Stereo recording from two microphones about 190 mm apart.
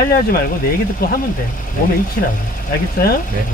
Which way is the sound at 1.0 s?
55° left (ahead or behind).